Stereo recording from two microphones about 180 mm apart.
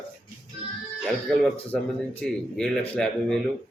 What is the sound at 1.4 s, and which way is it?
Speech, 10° left (ahead or behind).